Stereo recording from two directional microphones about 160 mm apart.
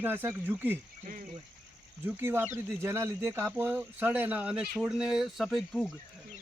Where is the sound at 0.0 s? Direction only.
15° right (ahead or behind).